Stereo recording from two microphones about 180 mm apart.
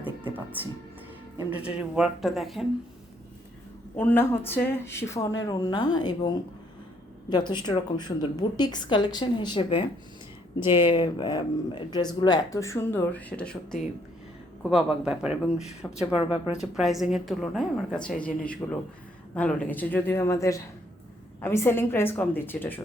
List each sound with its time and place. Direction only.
1.4 s speech: 10° right (ahead or behind)
3.9 s speech: 10° left (ahead or behind); by 9.8 s 30° left (ahead or behind)
10.8 s speech: 25° left (ahead or behind)